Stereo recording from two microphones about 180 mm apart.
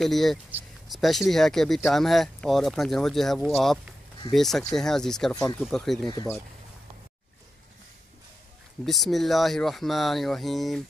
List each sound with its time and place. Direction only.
0.0 s speech: centre (ahead or behind)
8.8 s speech: centre (ahead or behind)